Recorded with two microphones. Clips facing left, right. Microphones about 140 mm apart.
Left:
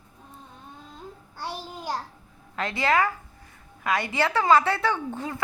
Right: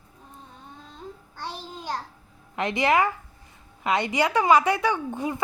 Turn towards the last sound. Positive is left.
turn(degrees=-15)  # may be behind; listen again after turning